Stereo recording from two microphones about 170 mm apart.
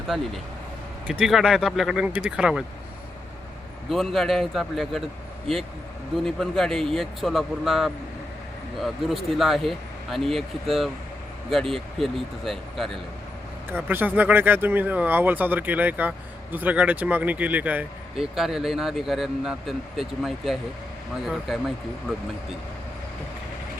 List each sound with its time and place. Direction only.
1.2 s speech: centre (ahead or behind)
3.8 s speech: centre (ahead or behind)
6.1 s speech: centre (ahead or behind)
13.7 s speech: 10° right (ahead or behind)